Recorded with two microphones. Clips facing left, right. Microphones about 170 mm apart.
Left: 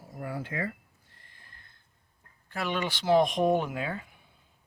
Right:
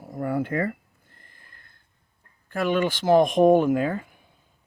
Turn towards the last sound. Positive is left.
turn(degrees=-45)  # may be behind; listen again after turning